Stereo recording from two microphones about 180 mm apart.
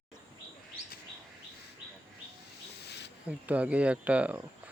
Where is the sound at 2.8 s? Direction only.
70° left (ahead or behind).